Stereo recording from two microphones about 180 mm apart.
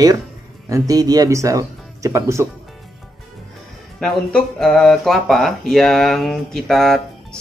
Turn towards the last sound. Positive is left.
turn(degrees=0)  # may be behind; listen again after turning